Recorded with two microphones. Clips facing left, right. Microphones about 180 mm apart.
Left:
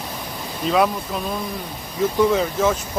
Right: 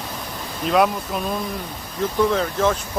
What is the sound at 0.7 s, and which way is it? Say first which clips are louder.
Speech: right 1 dB; centre (ahead or behind).